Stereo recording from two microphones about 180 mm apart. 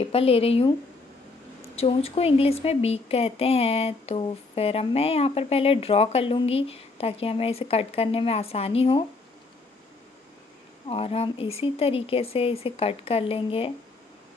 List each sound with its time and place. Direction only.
0.0 s speech: 35° left (ahead or behind)
1.8 s speech: 35° left (ahead or behind)
10.9 s speech: 35° left (ahead or behind)